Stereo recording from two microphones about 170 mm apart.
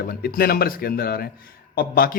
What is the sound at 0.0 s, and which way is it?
Speech, 60° left (ahead or behind).